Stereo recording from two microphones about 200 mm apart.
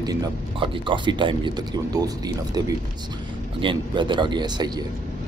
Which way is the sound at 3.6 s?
25° right (ahead or behind).